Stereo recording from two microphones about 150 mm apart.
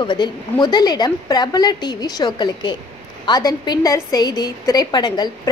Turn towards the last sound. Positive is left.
turn(degrees=30)  # may be behind; listen again after turning